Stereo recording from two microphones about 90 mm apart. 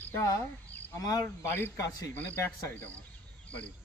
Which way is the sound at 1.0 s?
40° left (ahead or behind).